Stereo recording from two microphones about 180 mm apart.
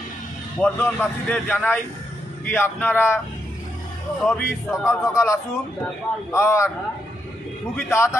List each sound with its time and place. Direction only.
0.6 s a man's voice: 10° left (ahead or behind)
4.4 s a man's voice: 15° left (ahead or behind)
7.7 s a man's voice: 15° left (ahead or behind)